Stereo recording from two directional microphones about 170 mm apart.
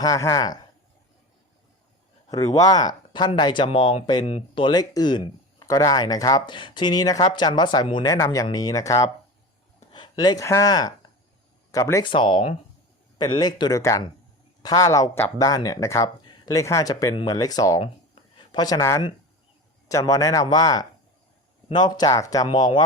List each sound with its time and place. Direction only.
0.0 s speech: 20° left (ahead or behind)
2.3 s speech: 20° left (ahead or behind)
17.8 s a sound: 30° left (ahead or behind)
19.9 s speech: 20° left (ahead or behind)